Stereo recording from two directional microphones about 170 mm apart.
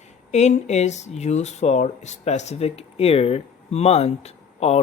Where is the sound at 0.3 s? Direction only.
40° left (ahead or behind).